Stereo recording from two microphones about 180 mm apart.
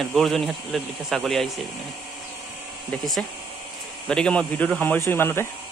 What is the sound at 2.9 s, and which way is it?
Speech, centre (ahead or behind).